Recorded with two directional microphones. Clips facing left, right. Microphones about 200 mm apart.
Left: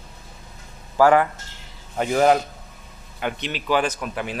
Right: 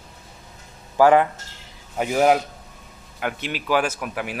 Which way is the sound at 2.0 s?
5° right (ahead or behind).